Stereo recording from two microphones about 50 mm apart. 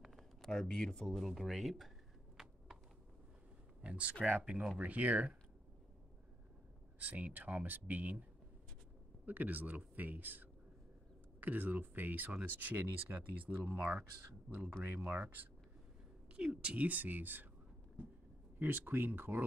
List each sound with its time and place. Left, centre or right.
0.0 s a sound: centre
0.5 s speech: centre
1.1 s speech: centre
2.4 s a sound: centre
3.8 s speech: right
7.0 s speech: right
9.2 s speech: right
13.7 s speech: right
15.0 s speech: right
16.3 s speech: right
18.6 s speech: right